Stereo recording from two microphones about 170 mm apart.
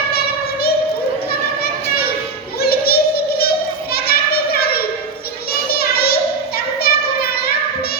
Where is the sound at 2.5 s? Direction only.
65° left (ahead or behind).